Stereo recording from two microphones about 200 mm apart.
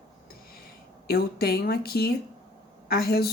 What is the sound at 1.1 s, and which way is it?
A woman's voice, 50° left (ahead or behind).